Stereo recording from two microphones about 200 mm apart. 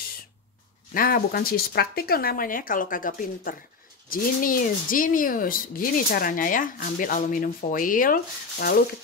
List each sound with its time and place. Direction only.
0.9 s speech: 45° left (ahead or behind)